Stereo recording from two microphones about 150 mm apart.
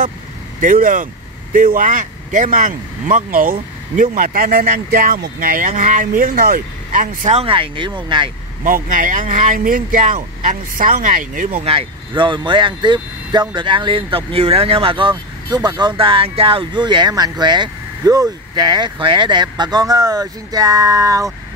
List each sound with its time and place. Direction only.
0.6 s speech: 65° right (ahead or behind)
7.3 s speech: 35° right (ahead or behind)
8.6 s speech: 65° right (ahead or behind)
11.6 s speech: 35° right (ahead or behind)